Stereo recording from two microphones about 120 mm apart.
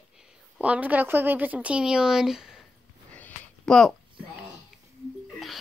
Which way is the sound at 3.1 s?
10° left (ahead or behind).